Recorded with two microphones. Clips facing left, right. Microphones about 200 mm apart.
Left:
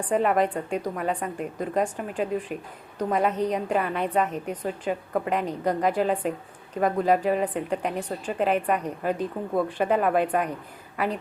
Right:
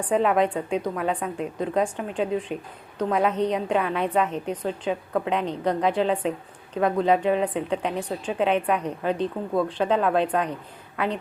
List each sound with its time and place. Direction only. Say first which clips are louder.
0.1 s a woman's voice: right 1 dB; centre (ahead or behind)